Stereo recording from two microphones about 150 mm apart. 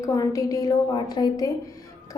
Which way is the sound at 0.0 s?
20° left (ahead or behind).